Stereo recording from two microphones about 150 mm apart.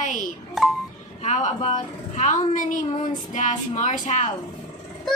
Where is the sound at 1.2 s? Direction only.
50° left (ahead or behind).